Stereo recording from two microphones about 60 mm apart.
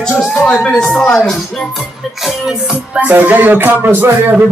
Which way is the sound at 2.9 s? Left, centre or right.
Right.